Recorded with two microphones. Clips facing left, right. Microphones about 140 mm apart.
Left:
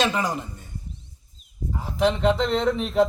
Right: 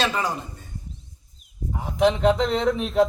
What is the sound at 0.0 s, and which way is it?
Speech, 15° left (ahead or behind).